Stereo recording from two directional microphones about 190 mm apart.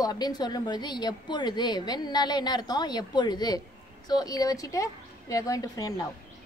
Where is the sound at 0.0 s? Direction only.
20° left (ahead or behind).